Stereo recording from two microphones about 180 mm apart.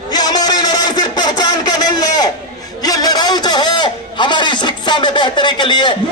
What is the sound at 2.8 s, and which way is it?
A man's voice, 20° left (ahead or behind).